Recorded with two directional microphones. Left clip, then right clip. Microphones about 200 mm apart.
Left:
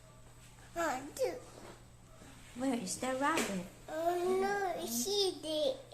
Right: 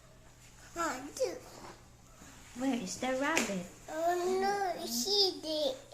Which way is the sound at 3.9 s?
10° left (ahead or behind).